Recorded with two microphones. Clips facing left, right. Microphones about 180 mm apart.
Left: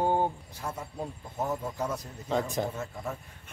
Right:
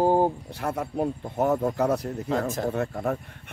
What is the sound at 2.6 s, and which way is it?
Speech, 65° right (ahead or behind).